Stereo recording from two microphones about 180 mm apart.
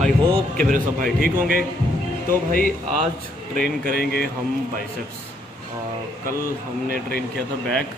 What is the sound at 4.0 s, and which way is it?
Speech, 60° left (ahead or behind).